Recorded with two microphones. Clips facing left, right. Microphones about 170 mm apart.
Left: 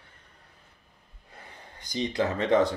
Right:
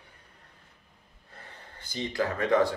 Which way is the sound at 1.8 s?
15° left (ahead or behind).